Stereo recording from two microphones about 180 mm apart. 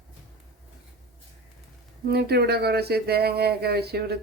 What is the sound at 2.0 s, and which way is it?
Speech, 65° right (ahead or behind).